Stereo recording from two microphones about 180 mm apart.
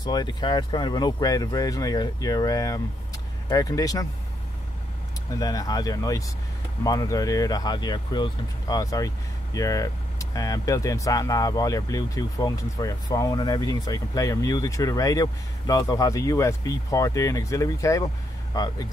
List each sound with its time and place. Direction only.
0.0 s speech: 20° left (ahead or behind)
5.3 s speech: 20° left (ahead or behind)